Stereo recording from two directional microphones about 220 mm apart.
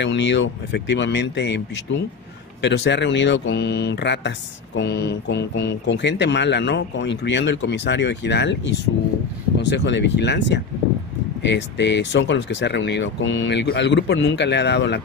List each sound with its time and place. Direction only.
0.0 s speech: 55° left (ahead or behind)
2.6 s speech: 50° left (ahead or behind)